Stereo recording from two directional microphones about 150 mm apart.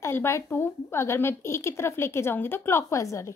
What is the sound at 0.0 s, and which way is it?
A woman's voice, 15° left (ahead or behind).